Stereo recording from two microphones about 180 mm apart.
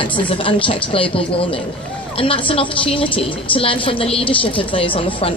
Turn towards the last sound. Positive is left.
turn(degrees=30)  # may be behind; listen again after turning